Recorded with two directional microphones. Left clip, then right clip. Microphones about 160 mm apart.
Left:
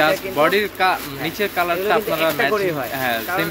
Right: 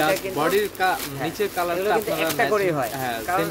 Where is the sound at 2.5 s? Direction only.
15° right (ahead or behind).